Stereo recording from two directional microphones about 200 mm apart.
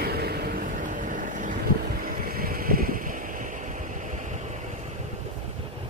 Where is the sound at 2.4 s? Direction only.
45° right (ahead or behind).